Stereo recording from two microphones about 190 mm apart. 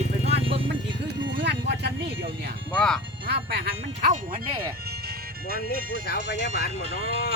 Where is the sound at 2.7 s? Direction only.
5° left (ahead or behind).